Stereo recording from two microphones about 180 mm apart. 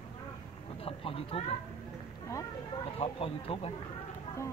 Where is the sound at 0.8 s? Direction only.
30° left (ahead or behind).